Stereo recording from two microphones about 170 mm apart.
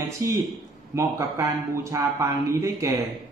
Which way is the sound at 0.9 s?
15° right (ahead or behind).